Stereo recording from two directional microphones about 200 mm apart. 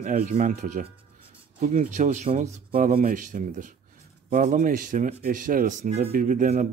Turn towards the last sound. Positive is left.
turn(degrees=-35)  # may be behind; listen again after turning